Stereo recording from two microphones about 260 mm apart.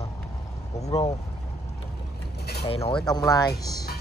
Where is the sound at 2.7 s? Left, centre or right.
Left.